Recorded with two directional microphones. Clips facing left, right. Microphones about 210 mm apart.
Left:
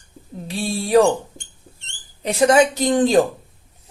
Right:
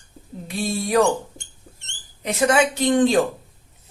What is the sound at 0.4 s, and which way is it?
Speech, 30° left (ahead or behind).